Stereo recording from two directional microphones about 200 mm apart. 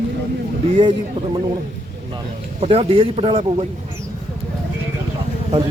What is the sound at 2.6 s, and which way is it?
A man's voice, 30° right (ahead or behind).